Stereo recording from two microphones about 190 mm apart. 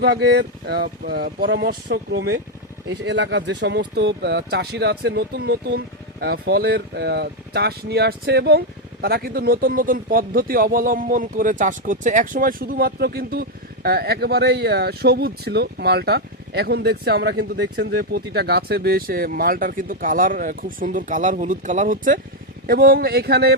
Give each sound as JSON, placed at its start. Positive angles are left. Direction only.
{"t": 0.0, "sound": "speech", "side_deg": -60}